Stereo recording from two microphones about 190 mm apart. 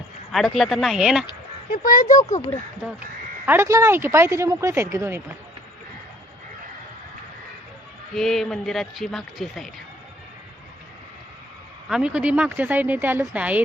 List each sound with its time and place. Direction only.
0.3 s a man's voice: centre (ahead or behind)
1.7 s speech: 45° left (ahead or behind)
2.8 s a man's voice: 5° right (ahead or behind)
8.1 s a man's voice: centre (ahead or behind)
11.9 s speech: 5° right (ahead or behind)